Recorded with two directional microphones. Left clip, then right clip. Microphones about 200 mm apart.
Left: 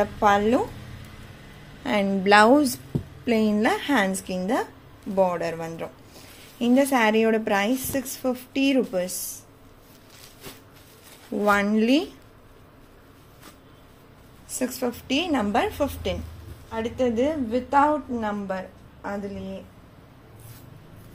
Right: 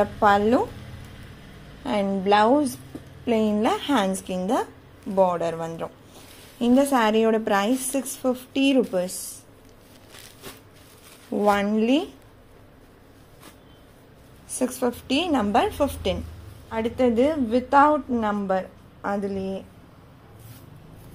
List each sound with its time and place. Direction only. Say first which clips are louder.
0.0 s a woman's voice: right 1 dB; 10° right (ahead or behind)
1.8 s a woman's voice: left 1 dB; 5° left (ahead or behind)
3.3 s a woman's voice: even; 5° left (ahead or behind)
11.3 s a woman's voice: even; 5° right (ahead or behind)
14.6 s a woman's voice: right 3 dB; 15° right (ahead or behind); by 19.6 s 40° right (ahead or behind)